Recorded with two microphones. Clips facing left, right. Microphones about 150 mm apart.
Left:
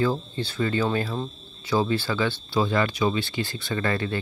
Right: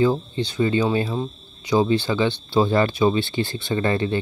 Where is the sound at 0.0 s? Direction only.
20° right (ahead or behind).